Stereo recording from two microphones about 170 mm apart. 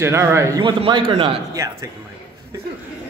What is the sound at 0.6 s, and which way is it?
Speech, 30° right (ahead or behind).